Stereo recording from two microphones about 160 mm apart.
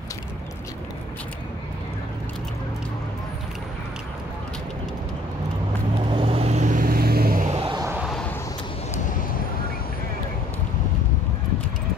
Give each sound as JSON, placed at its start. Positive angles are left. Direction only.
{"t": 6.1, "sound": "vehicle", "side_deg": -35}
{"t": 7.5, "sound": "a sound", "side_deg": -35}
{"t": 8.0, "sound": "vehicle", "side_deg": 0}